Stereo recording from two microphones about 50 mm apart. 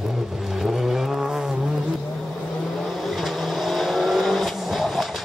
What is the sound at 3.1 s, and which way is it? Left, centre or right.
Vehicle, centre.